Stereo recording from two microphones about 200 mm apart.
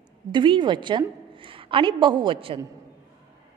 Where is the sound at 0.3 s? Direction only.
25° right (ahead or behind).